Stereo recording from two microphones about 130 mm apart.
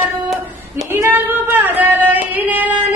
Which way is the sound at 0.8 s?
20° right (ahead or behind).